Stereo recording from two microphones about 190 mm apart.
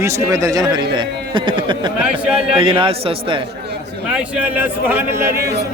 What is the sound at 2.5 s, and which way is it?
Speech, 25° right (ahead or behind).